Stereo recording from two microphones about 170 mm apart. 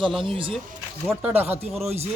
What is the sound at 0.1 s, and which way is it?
Speech, centre (ahead or behind).